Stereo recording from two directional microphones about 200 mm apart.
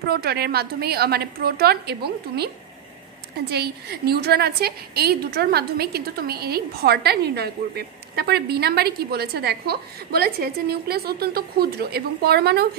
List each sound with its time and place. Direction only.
0.1 s a woman's voice: 50° right (ahead or behind)